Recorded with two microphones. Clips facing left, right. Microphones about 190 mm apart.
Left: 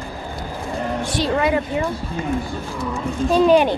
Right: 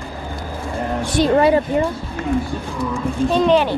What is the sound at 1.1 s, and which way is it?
Speech, 50° right (ahead or behind).